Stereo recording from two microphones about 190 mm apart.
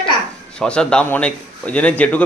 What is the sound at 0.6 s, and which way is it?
A man's voice, 5° left (ahead or behind).